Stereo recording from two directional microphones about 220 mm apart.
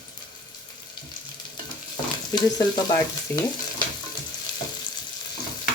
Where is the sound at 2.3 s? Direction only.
20° left (ahead or behind).